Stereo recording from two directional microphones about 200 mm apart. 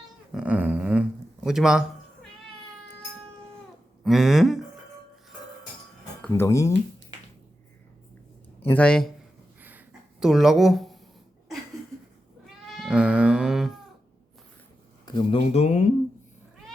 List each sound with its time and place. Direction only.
0.3 s a sound: 5° right (ahead or behind)
1.5 s a man's voice: 5° right (ahead or behind)
4.0 s speech: centre (ahead or behind)
6.2 s speech: 10° left (ahead or behind)
8.6 s a man's voice: 5° left (ahead or behind)
9.6 s a sound: 10° right (ahead or behind)
12.6 s cat: centre (ahead or behind)
15.0 s speech: 25° left (ahead or behind)